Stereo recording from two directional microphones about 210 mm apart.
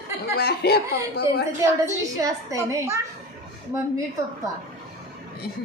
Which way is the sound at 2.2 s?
15° right (ahead or behind).